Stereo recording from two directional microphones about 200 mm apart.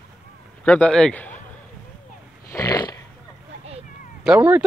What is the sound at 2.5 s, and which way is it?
Snoring, 15° left (ahead or behind).